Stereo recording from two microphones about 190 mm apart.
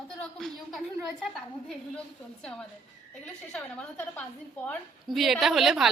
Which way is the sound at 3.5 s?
5° left (ahead or behind).